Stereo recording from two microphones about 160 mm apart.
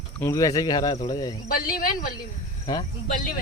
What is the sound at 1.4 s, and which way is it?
Speech, 60° left (ahead or behind).